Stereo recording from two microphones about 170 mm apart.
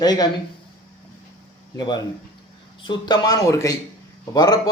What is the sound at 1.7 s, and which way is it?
A man's voice, 25° left (ahead or behind).